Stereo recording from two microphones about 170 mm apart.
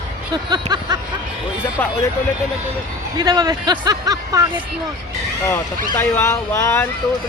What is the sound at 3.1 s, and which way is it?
Speech, 25° right (ahead or behind).